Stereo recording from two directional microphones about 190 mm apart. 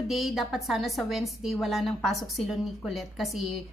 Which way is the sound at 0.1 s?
Centre (ahead or behind).